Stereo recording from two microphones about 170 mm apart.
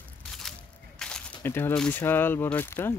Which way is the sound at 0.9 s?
5° left (ahead or behind).